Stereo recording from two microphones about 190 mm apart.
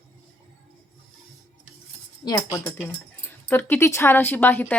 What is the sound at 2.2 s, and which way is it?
A woman's voice, 15° left (ahead or behind).